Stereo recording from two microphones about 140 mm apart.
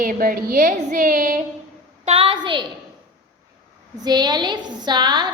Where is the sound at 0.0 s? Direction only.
80° right.